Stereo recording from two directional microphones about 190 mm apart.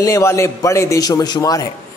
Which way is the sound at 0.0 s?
15° left (ahead or behind).